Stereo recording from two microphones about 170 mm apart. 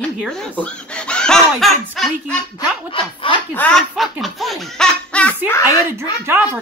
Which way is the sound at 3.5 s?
5° left (ahead or behind).